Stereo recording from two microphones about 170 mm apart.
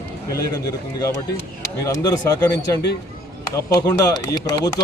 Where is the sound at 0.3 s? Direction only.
20° left (ahead or behind).